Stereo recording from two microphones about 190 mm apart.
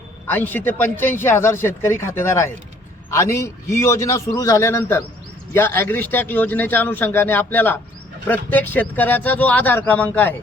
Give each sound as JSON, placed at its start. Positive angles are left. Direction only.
{"t": 0.3, "sound": "a man's voice", "side_deg": 10}